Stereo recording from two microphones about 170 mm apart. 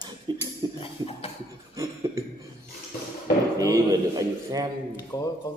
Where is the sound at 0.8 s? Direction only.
35° left (ahead or behind).